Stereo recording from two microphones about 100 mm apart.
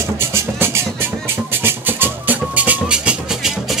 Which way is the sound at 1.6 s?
20° right (ahead or behind).